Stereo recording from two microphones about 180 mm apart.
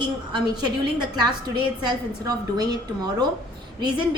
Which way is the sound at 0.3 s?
25° right (ahead or behind).